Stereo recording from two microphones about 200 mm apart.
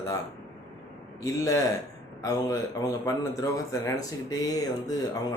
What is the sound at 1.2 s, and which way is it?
Speech, 15° left (ahead or behind).